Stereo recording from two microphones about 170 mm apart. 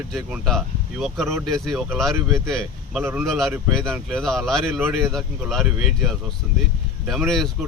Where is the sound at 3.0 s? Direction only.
15° right (ahead or behind).